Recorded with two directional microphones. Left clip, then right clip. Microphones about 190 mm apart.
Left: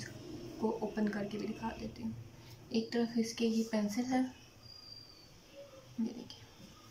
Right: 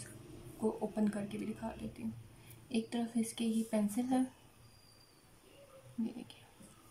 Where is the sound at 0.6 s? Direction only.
20° right (ahead or behind).